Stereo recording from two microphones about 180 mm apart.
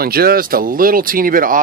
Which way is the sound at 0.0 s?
55° right (ahead or behind).